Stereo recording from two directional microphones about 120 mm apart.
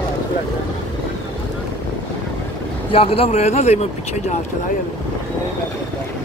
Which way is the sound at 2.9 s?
50° left (ahead or behind).